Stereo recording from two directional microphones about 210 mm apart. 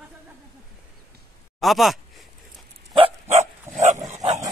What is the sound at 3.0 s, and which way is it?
Dog, 30° right (ahead or behind).